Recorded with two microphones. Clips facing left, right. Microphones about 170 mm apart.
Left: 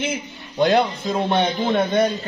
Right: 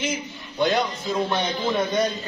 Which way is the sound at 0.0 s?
60° left (ahead or behind).